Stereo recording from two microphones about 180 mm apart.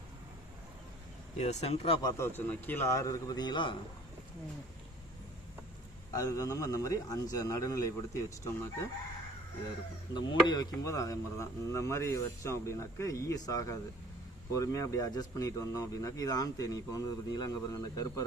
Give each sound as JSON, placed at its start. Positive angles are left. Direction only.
{"t": 1.4, "sound": "speech", "side_deg": 35}
{"t": 6.1, "sound": "speech", "side_deg": 20}
{"t": 10.2, "sound": "speech", "side_deg": 25}